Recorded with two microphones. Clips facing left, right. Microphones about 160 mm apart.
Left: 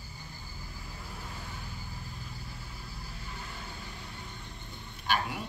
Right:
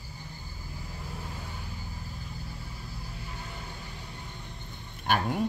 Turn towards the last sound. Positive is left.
turn(degrees=-45)  # may be behind; listen again after turning